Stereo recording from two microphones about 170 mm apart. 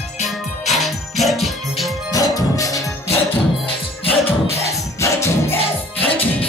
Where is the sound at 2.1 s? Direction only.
20° left (ahead or behind).